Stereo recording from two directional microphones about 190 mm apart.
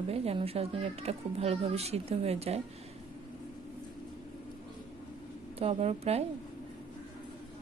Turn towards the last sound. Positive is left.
turn(degrees=-35)  # may be behind; listen again after turning